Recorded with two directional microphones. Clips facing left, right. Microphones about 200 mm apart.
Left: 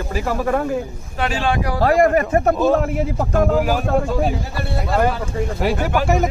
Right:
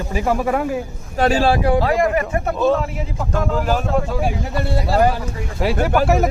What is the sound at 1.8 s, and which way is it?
Speech, 50° left (ahead or behind).